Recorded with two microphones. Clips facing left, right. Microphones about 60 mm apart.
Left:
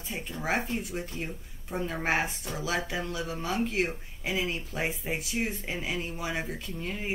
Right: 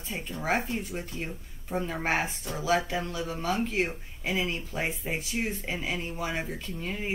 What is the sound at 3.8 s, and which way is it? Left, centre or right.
Speech, centre.